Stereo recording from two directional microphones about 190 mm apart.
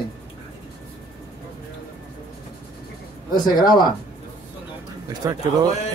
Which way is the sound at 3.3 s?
20° left (ahead or behind).